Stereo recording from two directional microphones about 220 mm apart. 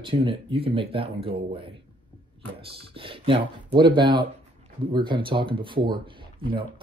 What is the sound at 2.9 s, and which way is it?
Speech, 25° right (ahead or behind).